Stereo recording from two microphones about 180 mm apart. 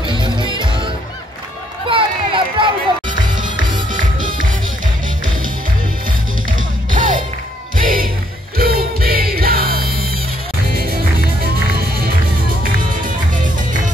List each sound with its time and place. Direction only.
0.0 s music: 25° right (ahead or behind)
1.9 s a sound: 30° right (ahead or behind)
4.2 s music: 50° right (ahead or behind)
6.9 s music: 45° right (ahead or behind)